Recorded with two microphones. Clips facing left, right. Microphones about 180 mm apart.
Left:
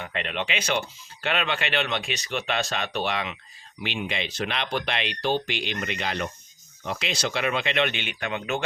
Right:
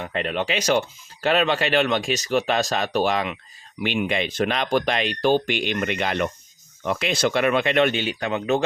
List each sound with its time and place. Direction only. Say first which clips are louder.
0.0 s speech: right 5 dB; 40° right (ahead or behind)